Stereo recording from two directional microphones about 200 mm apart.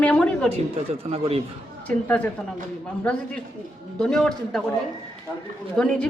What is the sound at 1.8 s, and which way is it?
Speech, 5° left (ahead or behind).